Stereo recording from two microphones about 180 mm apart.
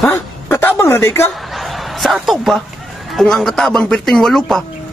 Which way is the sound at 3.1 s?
Centre (ahead or behind).